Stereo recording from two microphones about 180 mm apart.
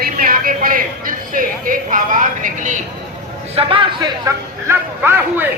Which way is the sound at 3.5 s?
30° right (ahead or behind).